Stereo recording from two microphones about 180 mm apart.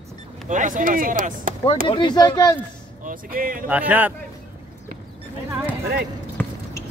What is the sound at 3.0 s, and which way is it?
Speech, 50° right (ahead or behind).